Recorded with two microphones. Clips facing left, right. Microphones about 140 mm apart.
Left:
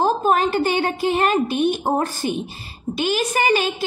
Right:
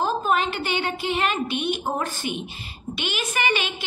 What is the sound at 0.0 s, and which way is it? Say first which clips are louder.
A woman's voice: left 5 dB; 45° left (ahead or behind).